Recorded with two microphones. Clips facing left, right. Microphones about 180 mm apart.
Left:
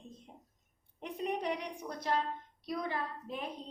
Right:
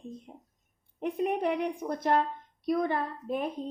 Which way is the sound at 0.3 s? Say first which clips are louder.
Right 6 dB; 55° right (ahead or behind).